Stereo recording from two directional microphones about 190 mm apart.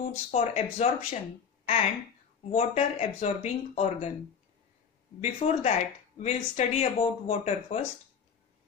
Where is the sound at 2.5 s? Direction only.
35° left (ahead or behind).